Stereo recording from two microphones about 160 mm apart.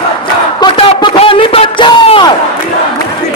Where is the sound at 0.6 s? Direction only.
30° left (ahead or behind).